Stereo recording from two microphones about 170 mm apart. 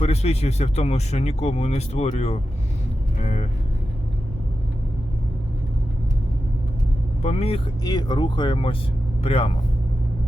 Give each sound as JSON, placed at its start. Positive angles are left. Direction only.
{"t": 0.0, "sound": "speech", "side_deg": 40}
{"t": 7.2, "sound": "speech", "side_deg": 40}
{"t": 7.9, "sound": "speech", "side_deg": 25}